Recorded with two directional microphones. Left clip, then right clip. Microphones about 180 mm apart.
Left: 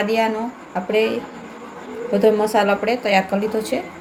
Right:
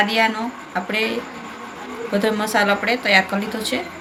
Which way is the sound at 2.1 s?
40° left (ahead or behind).